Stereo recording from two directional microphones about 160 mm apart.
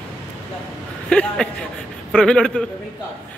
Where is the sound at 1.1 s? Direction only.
5° left (ahead or behind).